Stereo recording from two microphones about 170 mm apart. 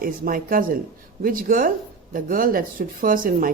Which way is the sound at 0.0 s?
55° right (ahead or behind).